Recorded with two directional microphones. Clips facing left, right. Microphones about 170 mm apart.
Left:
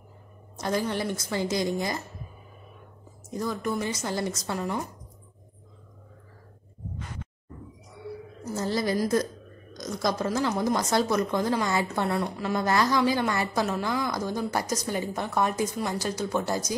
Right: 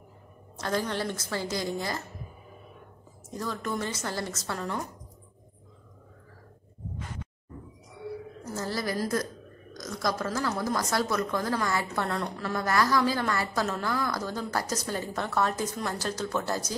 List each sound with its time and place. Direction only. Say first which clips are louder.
0.6 s a woman's voice: left 2 dB; 15° left (ahead or behind)
3.3 s a woman's voice: left 3 dB; 15° left (ahead or behind)
8.5 s a woman's voice: left 4 dB; 20° left (ahead or behind)